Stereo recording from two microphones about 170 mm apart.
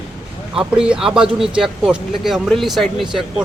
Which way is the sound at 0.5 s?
5° right (ahead or behind).